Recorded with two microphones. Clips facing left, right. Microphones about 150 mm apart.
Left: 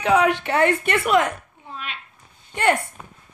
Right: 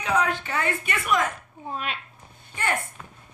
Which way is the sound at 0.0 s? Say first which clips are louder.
Left 7 dB; 70° left (ahead or behind).